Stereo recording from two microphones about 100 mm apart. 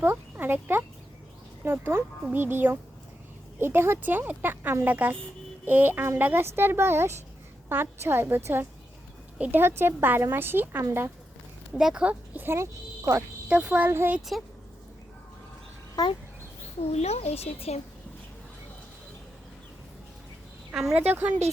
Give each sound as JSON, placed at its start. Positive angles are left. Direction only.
{"t": 0.0, "sound": "speech", "side_deg": -20}
{"t": 9.4, "sound": "speech", "side_deg": -20}
{"t": 11.7, "sound": "speech", "side_deg": -5}
{"t": 14.2, "sound": "speech", "side_deg": 0}
{"t": 16.9, "sound": "speech", "side_deg": 90}
{"t": 20.7, "sound": "speech", "side_deg": -5}
{"t": 21.1, "sound": "speech", "side_deg": -20}